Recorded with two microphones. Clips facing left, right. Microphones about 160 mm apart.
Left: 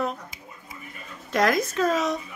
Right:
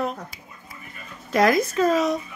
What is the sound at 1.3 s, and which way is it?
Speech, centre (ahead or behind).